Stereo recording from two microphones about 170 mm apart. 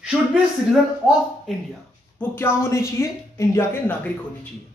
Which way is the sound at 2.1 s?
15° left (ahead or behind).